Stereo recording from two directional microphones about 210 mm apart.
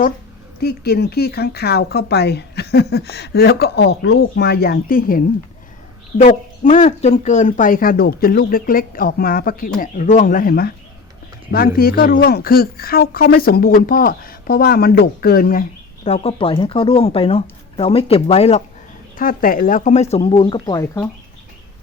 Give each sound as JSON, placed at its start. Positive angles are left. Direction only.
{"t": 0.6, "sound": "speech", "side_deg": 50}
{"t": 16.0, "sound": "speech", "side_deg": 30}
{"t": 19.1, "sound": "speech", "side_deg": 40}